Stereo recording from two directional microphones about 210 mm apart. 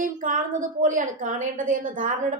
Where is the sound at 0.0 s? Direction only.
40° right (ahead or behind).